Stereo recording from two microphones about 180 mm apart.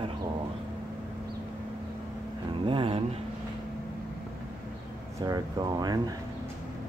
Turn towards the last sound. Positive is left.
turn(degrees=-20)  # may be behind; listen again after turning